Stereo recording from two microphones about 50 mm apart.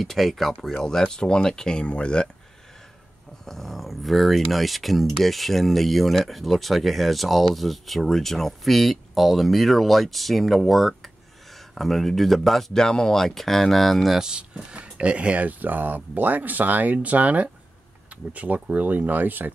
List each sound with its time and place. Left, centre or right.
0.0 s speech: centre; by 2.2 s left
3.4 s speech: centre
14.1 s speech: centre; by 19.5 s right